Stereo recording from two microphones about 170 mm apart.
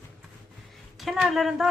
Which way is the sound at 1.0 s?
Centre (ahead or behind).